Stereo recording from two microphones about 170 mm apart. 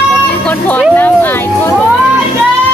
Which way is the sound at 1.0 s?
10° left (ahead or behind).